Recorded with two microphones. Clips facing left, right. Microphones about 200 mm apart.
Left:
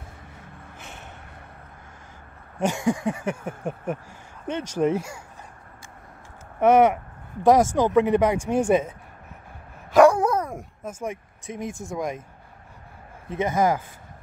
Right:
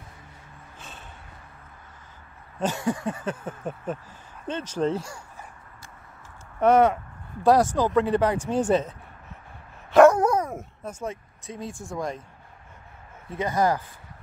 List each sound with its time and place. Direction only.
2.6 s a sound: 10° left (ahead or behind)
6.6 s a sound: 10° left (ahead or behind)
9.9 s dog: centre (ahead or behind)
10.3 s dog: 10° right (ahead or behind)
10.6 s speech: 10° left (ahead or behind)
13.3 s speech: 20° left (ahead or behind)